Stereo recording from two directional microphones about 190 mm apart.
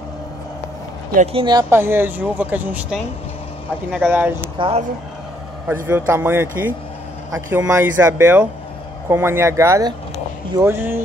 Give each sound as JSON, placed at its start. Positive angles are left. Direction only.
{"t": 1.1, "sound": "speech", "side_deg": -30}
{"t": 4.6, "sound": "speech", "side_deg": -30}
{"t": 5.9, "sound": "speech", "side_deg": -10}